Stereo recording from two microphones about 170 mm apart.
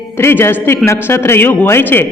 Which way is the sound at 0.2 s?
15° left (ahead or behind).